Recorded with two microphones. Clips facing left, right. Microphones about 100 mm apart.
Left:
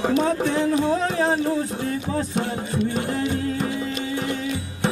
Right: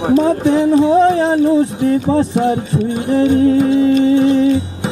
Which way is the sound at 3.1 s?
25° right (ahead or behind).